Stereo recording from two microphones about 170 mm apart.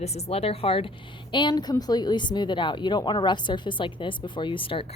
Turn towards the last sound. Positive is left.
turn(degrees=30)  # may be behind; listen again after turning